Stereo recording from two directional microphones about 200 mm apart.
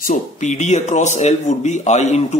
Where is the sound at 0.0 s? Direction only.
40° left (ahead or behind).